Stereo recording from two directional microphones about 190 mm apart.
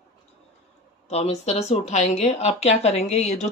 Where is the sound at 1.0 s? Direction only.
30° left (ahead or behind).